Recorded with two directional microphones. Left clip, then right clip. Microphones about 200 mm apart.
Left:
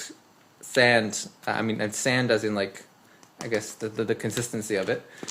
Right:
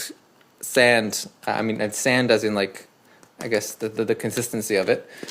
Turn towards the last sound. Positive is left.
turn(degrees=-35)  # may be behind; listen again after turning